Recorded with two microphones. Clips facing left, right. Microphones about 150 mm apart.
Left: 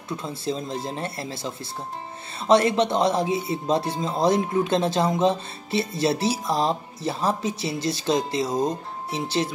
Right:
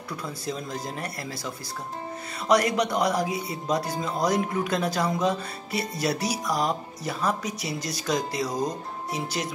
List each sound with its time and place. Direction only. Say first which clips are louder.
0.1 s speech: left 4 dB; 25° left (ahead or behind)